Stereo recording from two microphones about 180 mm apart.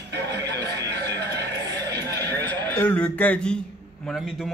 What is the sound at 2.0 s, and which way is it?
A man's voice, 10° left (ahead or behind).